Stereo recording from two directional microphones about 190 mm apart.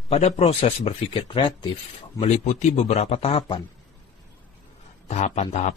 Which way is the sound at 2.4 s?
40° left (ahead or behind).